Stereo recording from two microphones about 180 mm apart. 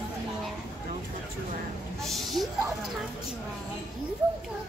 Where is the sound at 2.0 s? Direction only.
Centre (ahead or behind).